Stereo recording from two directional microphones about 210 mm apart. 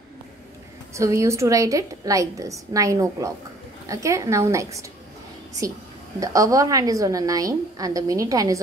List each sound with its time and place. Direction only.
0.9 s a woman's voice: 15° right (ahead or behind)
6.1 s a woman's voice: 15° right (ahead or behind)